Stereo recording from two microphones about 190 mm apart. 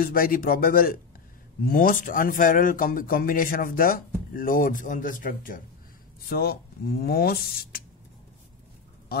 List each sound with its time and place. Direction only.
0.0 s speech: 50° left (ahead or behind)